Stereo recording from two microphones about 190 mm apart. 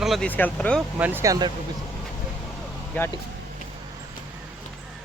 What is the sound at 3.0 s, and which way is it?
Speech, 10° left (ahead or behind).